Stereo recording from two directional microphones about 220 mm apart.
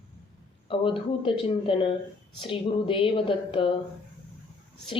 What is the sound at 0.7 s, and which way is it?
A woman's voice, 25° left (ahead or behind).